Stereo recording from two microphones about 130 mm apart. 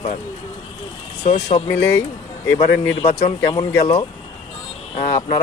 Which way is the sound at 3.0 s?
50° left (ahead or behind).